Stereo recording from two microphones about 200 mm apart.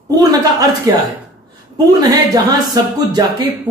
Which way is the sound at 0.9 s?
15° right (ahead or behind).